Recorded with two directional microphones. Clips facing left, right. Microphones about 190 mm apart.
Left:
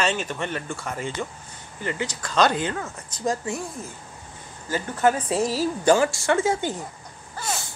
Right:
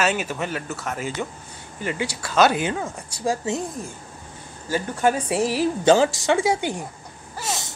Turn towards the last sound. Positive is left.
turn(degrees=-20)  # may be behind; listen again after turning